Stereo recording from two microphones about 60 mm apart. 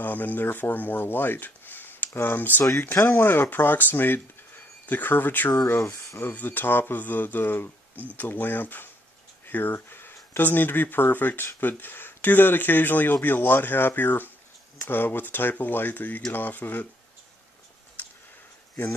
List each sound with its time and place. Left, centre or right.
0.0 s speech: left
5.5 s speech: left
6.1 s speech: left